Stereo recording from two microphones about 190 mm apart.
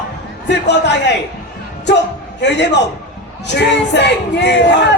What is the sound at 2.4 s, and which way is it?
Speech, 65° left (ahead or behind).